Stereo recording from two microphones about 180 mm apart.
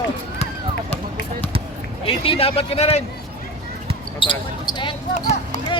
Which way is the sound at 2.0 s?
30° left (ahead or behind).